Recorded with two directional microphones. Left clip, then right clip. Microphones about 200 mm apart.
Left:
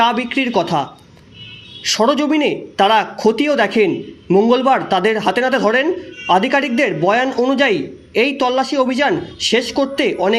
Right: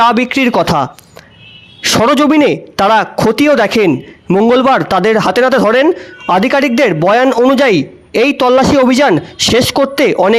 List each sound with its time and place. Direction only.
0.0 s a man's voice: 55° right (ahead or behind)